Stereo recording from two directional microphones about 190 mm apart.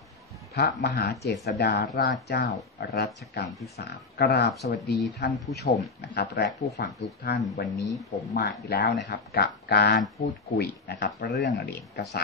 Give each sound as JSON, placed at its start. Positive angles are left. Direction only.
{"t": 0.6, "sound": "speech", "side_deg": 55}
{"t": 7.7, "sound": "speech", "side_deg": 0}
{"t": 8.3, "sound": "speech", "side_deg": 55}